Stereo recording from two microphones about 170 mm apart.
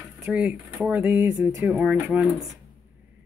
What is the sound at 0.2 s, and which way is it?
Speech, 10° right (ahead or behind).